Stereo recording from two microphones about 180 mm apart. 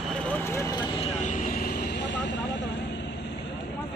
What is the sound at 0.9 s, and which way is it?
Vehicle, 40° left (ahead or behind).